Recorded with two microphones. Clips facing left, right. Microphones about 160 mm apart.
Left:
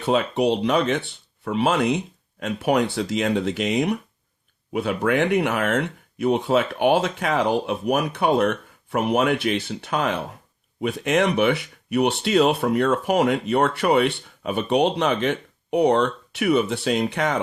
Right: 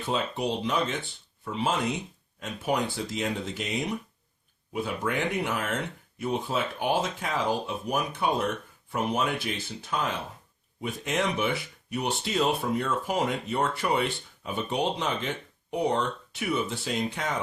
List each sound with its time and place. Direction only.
0.0 s speech: 70° left (ahead or behind)